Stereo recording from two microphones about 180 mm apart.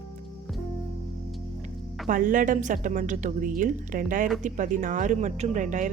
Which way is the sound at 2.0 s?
50° right (ahead or behind).